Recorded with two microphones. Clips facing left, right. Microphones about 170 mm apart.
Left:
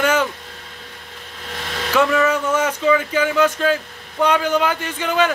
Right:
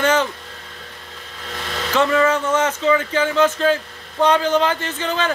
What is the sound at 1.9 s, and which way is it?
Speech, 10° left (ahead or behind).